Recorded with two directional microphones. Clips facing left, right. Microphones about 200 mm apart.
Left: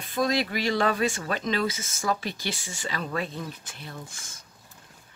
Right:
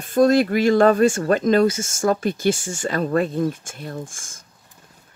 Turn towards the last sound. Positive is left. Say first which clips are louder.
# right 9 dB
turn(degrees=-45)  # may be behind; listen again after turning